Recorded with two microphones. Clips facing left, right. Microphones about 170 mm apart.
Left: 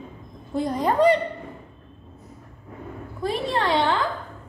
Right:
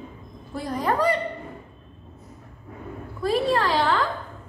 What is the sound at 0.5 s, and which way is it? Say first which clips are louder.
Speech: left 3 dB; 20° left (ahead or behind).